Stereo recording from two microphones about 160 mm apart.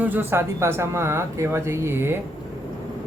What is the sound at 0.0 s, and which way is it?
Speech, 10° right (ahead or behind).